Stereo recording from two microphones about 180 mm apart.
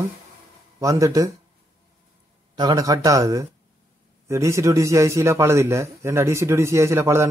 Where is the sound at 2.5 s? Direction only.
20° right (ahead or behind).